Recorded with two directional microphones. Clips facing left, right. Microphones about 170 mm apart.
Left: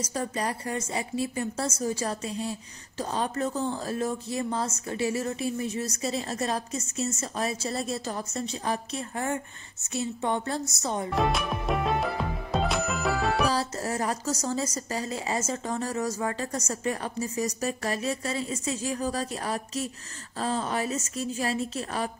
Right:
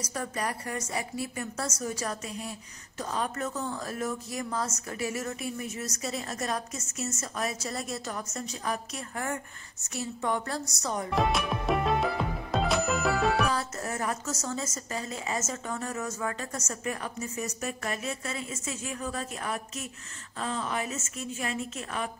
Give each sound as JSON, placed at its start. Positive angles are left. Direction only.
{"t": 0.0, "sound": "a woman's voice", "side_deg": 30}
{"t": 11.1, "sound": "music", "side_deg": 0}
{"t": 13.5, "sound": "a woman's voice", "side_deg": 30}